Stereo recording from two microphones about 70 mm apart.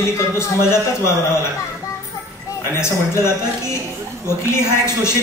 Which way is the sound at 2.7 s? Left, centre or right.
Left.